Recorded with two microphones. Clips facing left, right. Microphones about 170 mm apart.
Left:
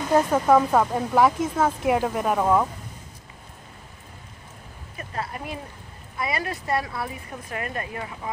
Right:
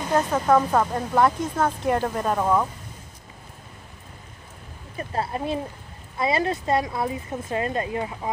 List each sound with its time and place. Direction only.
0.1 s speech: 10° left (ahead or behind)
4.9 s speech: 30° right (ahead or behind)